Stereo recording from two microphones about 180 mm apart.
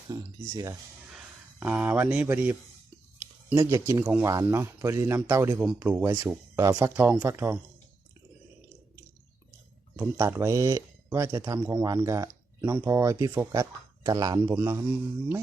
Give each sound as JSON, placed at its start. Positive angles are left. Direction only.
{"t": 0.1, "sound": "speech", "side_deg": -20}
{"t": 1.1, "sound": "speech", "side_deg": -5}
{"t": 9.9, "sound": "speech", "side_deg": -15}